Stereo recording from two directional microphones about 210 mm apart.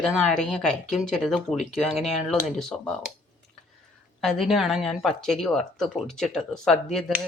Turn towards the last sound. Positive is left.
turn(degrees=0)  # may be behind; listen again after turning